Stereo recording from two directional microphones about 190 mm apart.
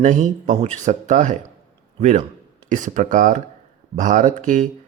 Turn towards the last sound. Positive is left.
turn(degrees=-40)  # may be behind; listen again after turning